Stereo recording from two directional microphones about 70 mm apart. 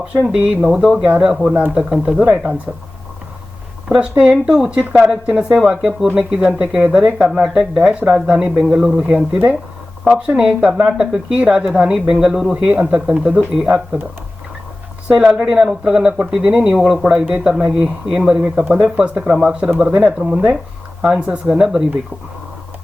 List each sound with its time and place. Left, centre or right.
0.0 s speech: centre
3.8 s speech: centre
15.0 s speech: centre